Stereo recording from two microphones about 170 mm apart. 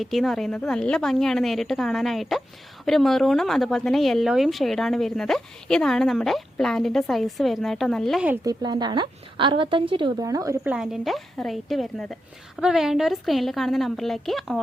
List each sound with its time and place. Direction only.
0.0 s speech: centre (ahead or behind)
8.4 s a woman's voice: 25° right (ahead or behind)
10.6 s speech: 5° right (ahead or behind)